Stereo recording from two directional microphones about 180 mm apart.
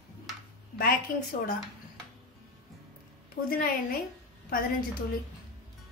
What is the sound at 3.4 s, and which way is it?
Speech, 55° left (ahead or behind).